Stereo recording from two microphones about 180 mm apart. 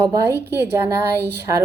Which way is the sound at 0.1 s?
15° right (ahead or behind).